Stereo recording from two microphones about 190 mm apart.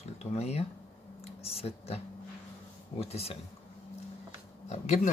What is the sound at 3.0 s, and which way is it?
Speech, 30° left (ahead or behind).